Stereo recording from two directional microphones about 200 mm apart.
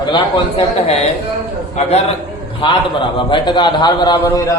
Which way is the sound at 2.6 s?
25° left (ahead or behind).